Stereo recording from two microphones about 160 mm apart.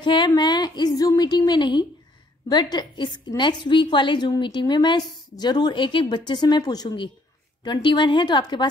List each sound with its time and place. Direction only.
0.0 s a woman's voice: 30° left (ahead or behind)